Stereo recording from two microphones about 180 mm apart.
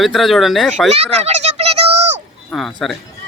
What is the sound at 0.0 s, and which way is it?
Speech, centre (ahead or behind).